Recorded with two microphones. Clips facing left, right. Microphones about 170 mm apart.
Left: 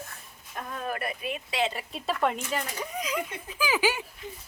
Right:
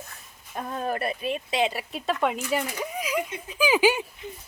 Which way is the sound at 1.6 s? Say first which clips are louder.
Right 1 dB; 10° right (ahead or behind).